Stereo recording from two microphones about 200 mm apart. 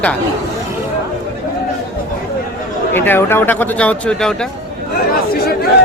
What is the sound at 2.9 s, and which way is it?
Speech, 10° left (ahead or behind).